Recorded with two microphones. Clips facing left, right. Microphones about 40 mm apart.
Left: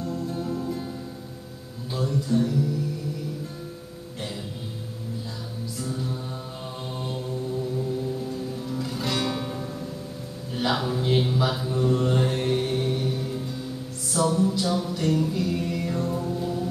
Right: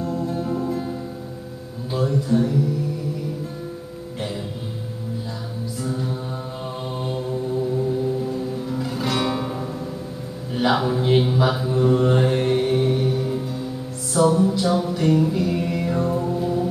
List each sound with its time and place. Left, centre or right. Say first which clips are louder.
0.0 s music: right 5 dB; centre
1.9 s speech: right 5 dB; centre
5.8 s mantra: right 4 dB; centre
14.1 s music: right 5 dB; centre